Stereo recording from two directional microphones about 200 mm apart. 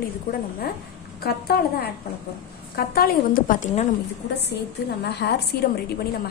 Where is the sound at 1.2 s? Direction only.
50° left (ahead or behind).